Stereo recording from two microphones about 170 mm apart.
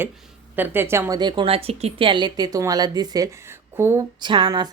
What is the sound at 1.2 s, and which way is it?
A woman's voice, 30° right (ahead or behind).